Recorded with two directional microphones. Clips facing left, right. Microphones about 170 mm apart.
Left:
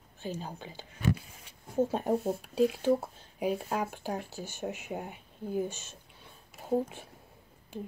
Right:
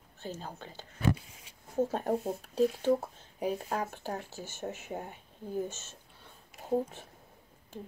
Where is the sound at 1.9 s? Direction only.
10° left (ahead or behind).